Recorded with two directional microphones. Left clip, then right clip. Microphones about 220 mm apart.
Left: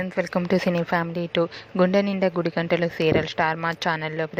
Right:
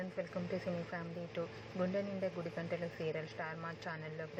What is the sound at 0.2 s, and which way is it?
A woman's voice, 45° left (ahead or behind).